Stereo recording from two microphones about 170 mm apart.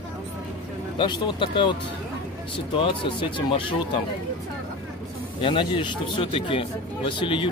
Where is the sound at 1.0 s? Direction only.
25° left (ahead or behind).